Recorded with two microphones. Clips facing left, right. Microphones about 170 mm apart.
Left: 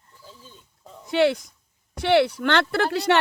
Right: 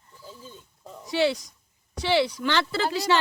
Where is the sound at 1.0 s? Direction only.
55° left (ahead or behind).